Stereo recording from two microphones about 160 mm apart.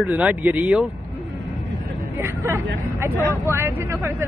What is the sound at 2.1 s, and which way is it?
Hubbub, 15° right (ahead or behind).